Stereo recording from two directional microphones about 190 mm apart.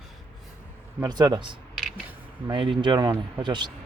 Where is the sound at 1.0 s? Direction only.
20° right (ahead or behind).